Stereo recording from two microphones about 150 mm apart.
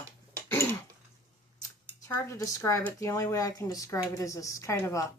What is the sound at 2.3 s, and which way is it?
Speech, 20° left (ahead or behind).